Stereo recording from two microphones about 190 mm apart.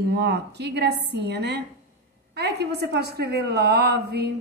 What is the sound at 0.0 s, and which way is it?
A woman's voice, 60° right (ahead or behind).